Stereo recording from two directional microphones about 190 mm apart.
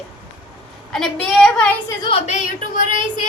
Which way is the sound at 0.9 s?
5° left (ahead or behind).